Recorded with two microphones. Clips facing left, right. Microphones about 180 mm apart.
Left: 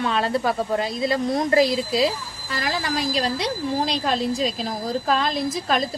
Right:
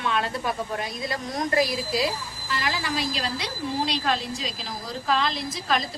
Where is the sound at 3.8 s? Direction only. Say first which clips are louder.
Left 2 dB; 50° left (ahead or behind).